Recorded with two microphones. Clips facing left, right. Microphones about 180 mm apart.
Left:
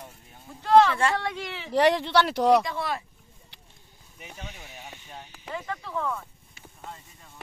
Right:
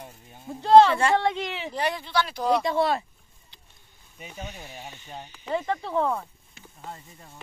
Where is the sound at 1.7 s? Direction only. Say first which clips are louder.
Left 10 dB; 80° left.